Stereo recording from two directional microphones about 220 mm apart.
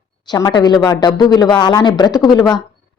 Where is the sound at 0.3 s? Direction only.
15° left (ahead or behind).